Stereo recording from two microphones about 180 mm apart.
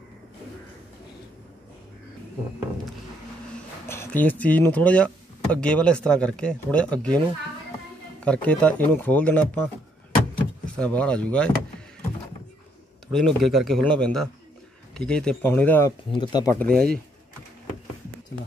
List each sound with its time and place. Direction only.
3.8 s speech: 15° left (ahead or behind)
10.8 s speech: 5° left (ahead or behind)
13.1 s speech: centre (ahead or behind)
16.1 s speech: 25° left (ahead or behind)
16.7 s speech: 55° right (ahead or behind)